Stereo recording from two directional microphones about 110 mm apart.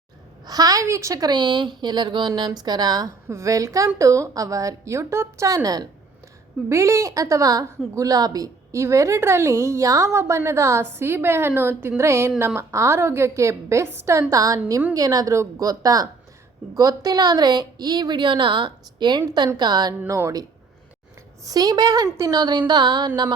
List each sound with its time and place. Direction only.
0.4 s a woman's voice: 35° right (ahead or behind)
20.1 s speech: 30° right (ahead or behind)
21.4 s a woman's voice: 35° right (ahead or behind)